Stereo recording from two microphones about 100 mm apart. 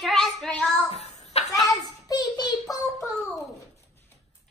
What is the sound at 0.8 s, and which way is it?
Child singing, 90° left.